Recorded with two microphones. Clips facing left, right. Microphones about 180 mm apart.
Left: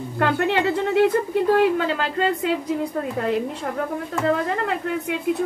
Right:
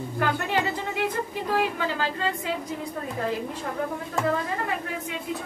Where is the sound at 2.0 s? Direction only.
70° left (ahead or behind).